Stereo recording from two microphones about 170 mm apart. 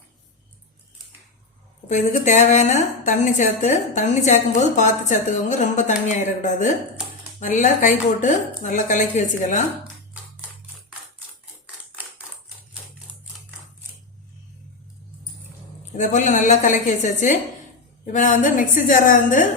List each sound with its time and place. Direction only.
1.9 s a woman's voice: 45° left (ahead or behind)
11.6 s typewriter: 10° right (ahead or behind)
15.9 s a woman's voice: 45° left (ahead or behind)